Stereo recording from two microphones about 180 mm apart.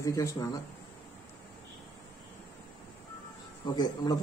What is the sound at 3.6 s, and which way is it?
Speech, 20° left (ahead or behind).